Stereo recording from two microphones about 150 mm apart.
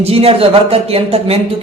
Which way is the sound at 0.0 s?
40° right (ahead or behind).